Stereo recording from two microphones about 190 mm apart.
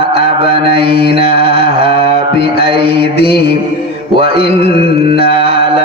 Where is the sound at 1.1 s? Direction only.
30° right (ahead or behind).